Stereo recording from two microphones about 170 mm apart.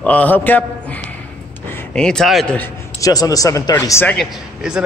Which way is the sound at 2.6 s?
20° left (ahead or behind).